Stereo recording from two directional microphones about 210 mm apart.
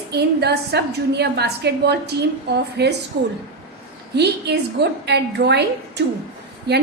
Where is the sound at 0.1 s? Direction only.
50° right (ahead or behind).